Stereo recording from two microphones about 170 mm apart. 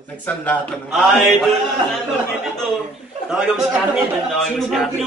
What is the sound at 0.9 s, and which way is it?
Speech, centre (ahead or behind).